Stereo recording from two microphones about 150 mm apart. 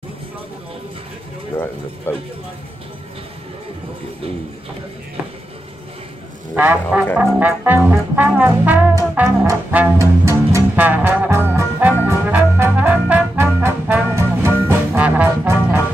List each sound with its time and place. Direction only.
2.1 s speech: 15° left (ahead or behind)
6.5 s music: 10° right (ahead or behind)